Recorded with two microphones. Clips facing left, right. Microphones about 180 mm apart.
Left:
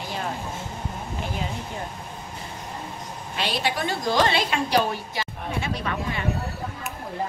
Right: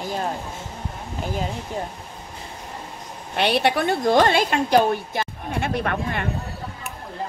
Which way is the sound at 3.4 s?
60° right (ahead or behind).